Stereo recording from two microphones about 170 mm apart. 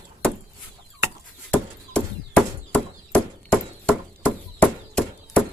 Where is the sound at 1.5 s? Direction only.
5° left (ahead or behind).